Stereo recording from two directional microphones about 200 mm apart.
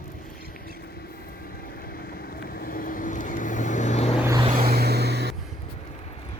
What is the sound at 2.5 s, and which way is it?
Vehicle, 45° left (ahead or behind).